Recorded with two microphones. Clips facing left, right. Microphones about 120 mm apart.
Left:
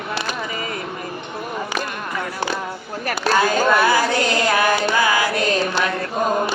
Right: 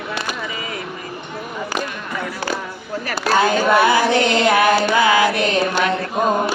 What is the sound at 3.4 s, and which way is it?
Female singing, 20° right (ahead or behind).